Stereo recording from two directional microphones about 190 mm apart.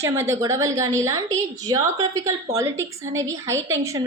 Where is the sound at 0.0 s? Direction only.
15° right (ahead or behind).